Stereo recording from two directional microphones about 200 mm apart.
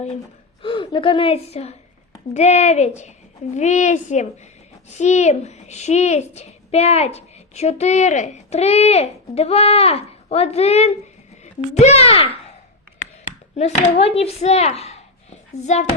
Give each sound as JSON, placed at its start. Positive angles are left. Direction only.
{"t": 0.6, "sound": "a woman's voice", "side_deg": 25}
{"t": 13.6, "sound": "a woman's voice", "side_deg": 30}